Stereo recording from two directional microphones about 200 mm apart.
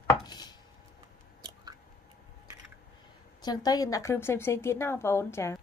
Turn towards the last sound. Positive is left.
turn(degrees=15)  # may be behind; listen again after turning